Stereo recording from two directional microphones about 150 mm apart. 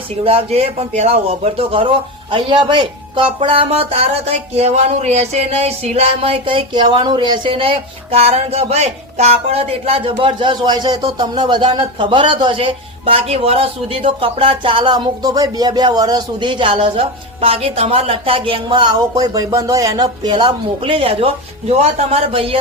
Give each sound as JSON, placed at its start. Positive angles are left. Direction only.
{"t": 0.3, "sound": "a man's voice", "side_deg": -40}